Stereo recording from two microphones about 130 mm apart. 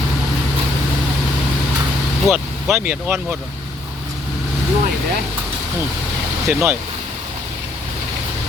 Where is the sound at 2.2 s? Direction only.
5° right (ahead or behind).